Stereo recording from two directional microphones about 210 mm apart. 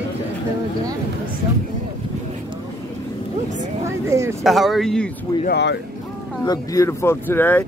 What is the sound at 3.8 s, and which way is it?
Speech, 15° right (ahead or behind).